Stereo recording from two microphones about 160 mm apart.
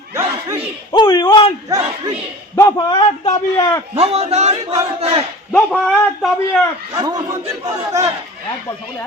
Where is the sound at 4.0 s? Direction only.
40° right (ahead or behind).